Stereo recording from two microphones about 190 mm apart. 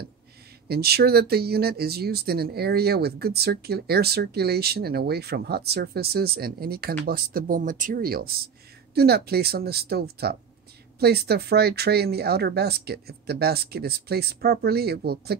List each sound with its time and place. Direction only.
0.7 s speech: 55° right (ahead or behind)